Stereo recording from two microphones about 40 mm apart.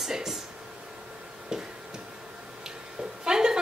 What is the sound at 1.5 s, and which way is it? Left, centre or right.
Tick-tock, centre.